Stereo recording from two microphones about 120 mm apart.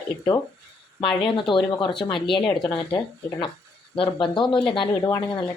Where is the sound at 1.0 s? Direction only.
45° left (ahead or behind).